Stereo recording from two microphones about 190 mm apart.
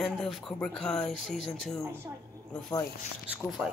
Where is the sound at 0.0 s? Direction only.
5° left (ahead or behind).